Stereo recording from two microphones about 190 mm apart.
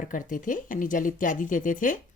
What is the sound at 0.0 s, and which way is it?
Speech, 45° left (ahead or behind).